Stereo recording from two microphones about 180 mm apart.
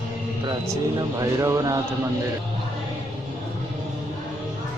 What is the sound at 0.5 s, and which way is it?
Speech, 20° right (ahead or behind).